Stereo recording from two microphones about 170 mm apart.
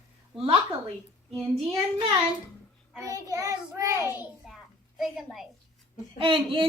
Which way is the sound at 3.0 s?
20° right (ahead or behind).